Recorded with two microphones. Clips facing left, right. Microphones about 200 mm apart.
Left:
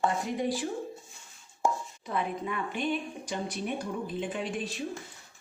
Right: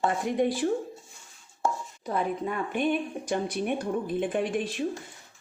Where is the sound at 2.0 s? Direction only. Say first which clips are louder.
Right 4 dB; 40° right (ahead or behind).